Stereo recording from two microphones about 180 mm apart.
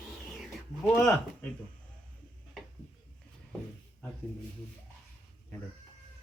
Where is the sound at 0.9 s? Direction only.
10° left (ahead or behind).